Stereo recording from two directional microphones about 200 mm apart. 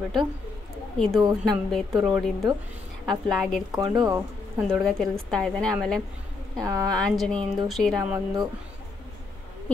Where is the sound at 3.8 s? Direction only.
15° right (ahead or behind).